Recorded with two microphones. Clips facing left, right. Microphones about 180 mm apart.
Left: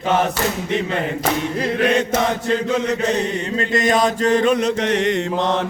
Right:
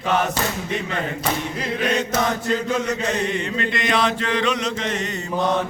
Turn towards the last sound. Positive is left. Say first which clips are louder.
# left 7 dB
turn(degrees=70)  # may be behind; listen again after turning